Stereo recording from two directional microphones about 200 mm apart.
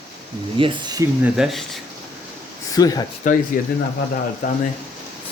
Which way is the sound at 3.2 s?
40° left (ahead or behind).